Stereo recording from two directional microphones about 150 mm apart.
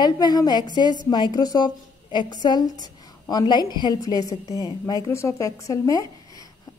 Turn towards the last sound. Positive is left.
turn(degrees=25)  # may be behind; listen again after turning